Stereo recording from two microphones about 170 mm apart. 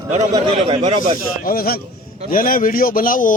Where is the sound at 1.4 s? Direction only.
60° left (ahead or behind).